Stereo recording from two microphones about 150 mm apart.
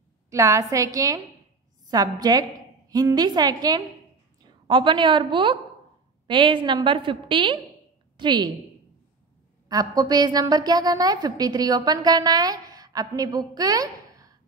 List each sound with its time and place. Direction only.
0.3 s a woman's voice: 20° right (ahead or behind)
9.7 s a woman's voice: 25° right (ahead or behind)